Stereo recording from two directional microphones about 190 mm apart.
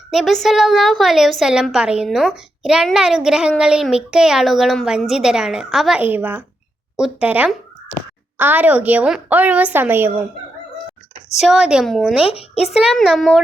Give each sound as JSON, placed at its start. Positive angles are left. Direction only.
{"t": 0.1, "sound": "a woman's voice", "side_deg": 0}
{"t": 11.3, "sound": "a woman's voice", "side_deg": -5}
{"t": 12.2, "sound": "speech", "side_deg": 30}
{"t": 12.7, "sound": "a woman's voice", "side_deg": 0}